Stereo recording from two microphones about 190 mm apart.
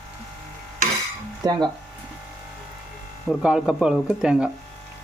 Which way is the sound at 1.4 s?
20° right (ahead or behind).